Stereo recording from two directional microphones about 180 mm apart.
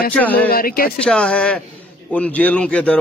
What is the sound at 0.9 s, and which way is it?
Speech, 5° left (ahead or behind).